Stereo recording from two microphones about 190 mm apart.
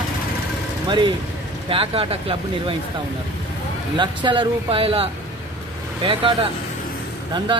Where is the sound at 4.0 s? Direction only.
25° right (ahead or behind).